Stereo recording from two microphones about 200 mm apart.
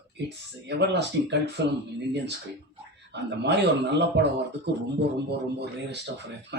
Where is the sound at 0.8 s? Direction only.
55° right (ahead or behind).